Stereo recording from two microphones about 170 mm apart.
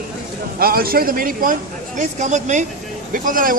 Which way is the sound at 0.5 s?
60° right (ahead or behind).